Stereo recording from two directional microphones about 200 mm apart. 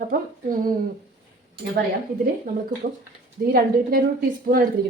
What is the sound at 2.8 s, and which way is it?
A woman's voice, 45° right (ahead or behind).